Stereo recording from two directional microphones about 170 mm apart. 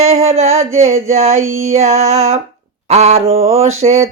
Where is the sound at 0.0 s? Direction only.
40° right (ahead or behind).